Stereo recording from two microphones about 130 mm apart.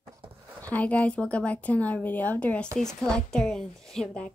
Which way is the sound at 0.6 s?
10° left (ahead or behind).